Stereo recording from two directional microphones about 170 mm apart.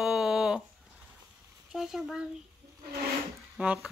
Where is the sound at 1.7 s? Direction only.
Centre (ahead or behind).